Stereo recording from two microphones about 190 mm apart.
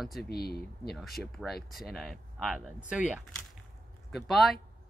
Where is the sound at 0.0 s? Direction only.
Centre (ahead or behind).